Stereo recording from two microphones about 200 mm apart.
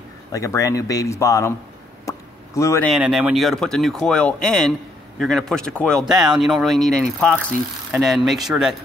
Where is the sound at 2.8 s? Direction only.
Centre (ahead or behind).